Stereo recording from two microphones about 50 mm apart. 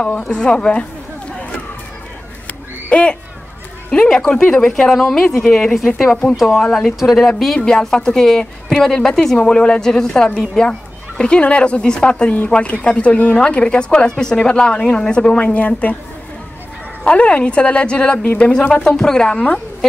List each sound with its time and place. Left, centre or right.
0.3 s a woman's voice: centre
2.4 s a sound: left
3.9 s a woman's voice: centre
4.7 s a woman's voice: centre
7.5 s a woman's voice: centre
15.4 s a woman's voice: left
17.0 s a woman's voice: left
19.3 s a woman's voice: left
19.8 s speech: centre